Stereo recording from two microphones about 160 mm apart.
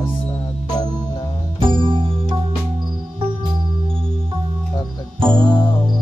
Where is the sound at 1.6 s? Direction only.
30° right (ahead or behind).